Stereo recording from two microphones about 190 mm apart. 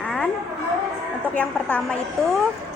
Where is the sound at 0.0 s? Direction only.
5° left (ahead or behind).